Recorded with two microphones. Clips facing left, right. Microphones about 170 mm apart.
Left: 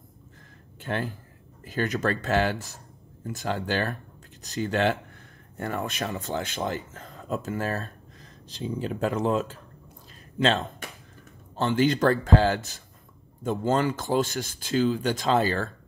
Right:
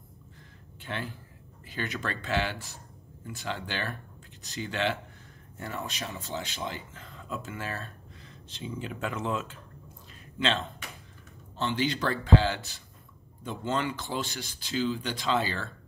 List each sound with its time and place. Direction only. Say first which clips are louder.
0.7 s speech: left 6 dB; 45° left (ahead or behind)
11.5 s speech: left 6 dB; 50° left (ahead or behind)